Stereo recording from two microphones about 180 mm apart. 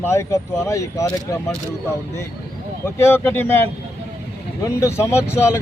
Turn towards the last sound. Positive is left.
turn(degrees=15)  # may be behind; listen again after turning